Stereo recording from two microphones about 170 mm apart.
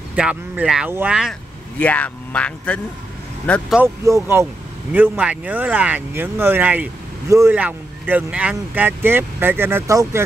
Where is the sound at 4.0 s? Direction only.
15° right (ahead or behind).